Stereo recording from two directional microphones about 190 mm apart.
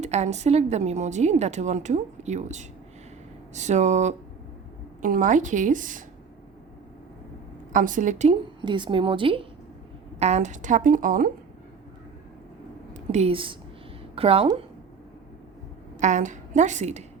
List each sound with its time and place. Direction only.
0.0 s a woman's voice: 35° right (ahead or behind)
7.7 s a woman's voice: 45° right (ahead or behind)
8.6 s a woman's voice: 25° right (ahead or behind); by 11.3 s 45° right (ahead or behind)
12.9 s a woman's voice: 35° right (ahead or behind)
16.0 s a woman's voice: 40° right (ahead or behind)